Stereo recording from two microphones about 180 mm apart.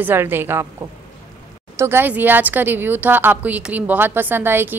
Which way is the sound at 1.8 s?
10° right (ahead or behind).